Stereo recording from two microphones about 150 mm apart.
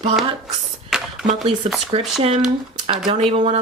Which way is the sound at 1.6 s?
45° right (ahead or behind).